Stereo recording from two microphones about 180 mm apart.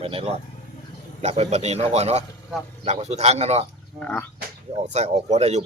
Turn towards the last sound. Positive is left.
turn(degrees=-40)  # may be behind; listen again after turning